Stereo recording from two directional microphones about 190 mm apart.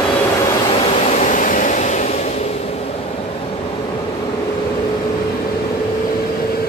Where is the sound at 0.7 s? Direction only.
35° left (ahead or behind).